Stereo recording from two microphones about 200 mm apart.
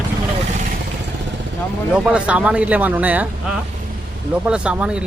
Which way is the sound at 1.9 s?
5° right (ahead or behind).